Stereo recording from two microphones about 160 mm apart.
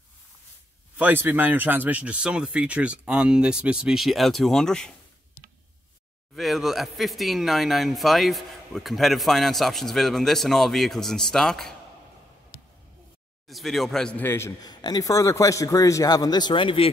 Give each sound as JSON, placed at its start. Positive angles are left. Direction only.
{"t": 0.9, "sound": "speech", "side_deg": -10}
{"t": 6.3, "sound": "speech", "side_deg": 0}
{"t": 13.5, "sound": "a man's voice", "side_deg": 0}